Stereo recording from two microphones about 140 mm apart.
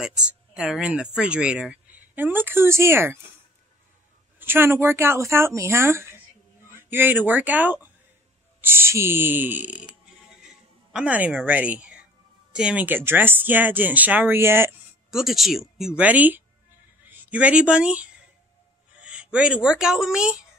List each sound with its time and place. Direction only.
0.0 s speech: 5° right (ahead or behind)
4.4 s speech: 15° right (ahead or behind)
10.9 s a woman's voice: 10° right (ahead or behind)
15.0 s speech: 5° right (ahead or behind)